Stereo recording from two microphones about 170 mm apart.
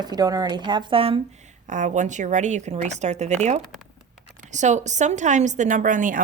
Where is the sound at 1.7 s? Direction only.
45° right (ahead or behind).